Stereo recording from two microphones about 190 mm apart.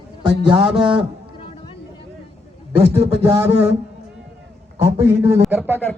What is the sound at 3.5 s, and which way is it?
Speech, 30° right (ahead or behind).